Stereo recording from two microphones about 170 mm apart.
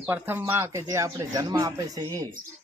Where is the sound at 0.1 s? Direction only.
10° right (ahead or behind).